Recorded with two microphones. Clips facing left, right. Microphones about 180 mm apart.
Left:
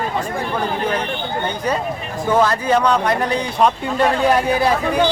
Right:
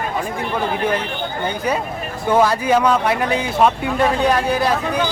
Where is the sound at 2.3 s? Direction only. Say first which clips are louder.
Right 1 dB; 10° right (ahead or behind).